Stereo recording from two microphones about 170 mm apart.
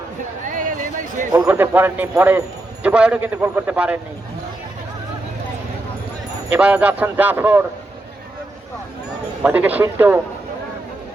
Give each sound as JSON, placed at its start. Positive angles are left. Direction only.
{"t": 0.5, "sound": "a sound", "side_deg": -50}
{"t": 1.4, "sound": "speech", "side_deg": -5}
{"t": 6.5, "sound": "speech", "side_deg": -10}
{"t": 9.4, "sound": "speech", "side_deg": -10}